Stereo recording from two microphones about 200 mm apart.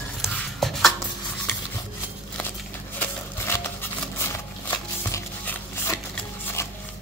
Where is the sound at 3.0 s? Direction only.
10° left (ahead or behind).